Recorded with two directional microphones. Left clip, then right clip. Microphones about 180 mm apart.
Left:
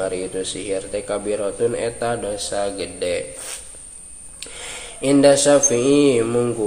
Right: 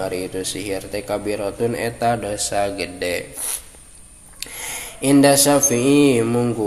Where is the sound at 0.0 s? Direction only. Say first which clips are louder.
Left 1 dB; 20° right (ahead or behind).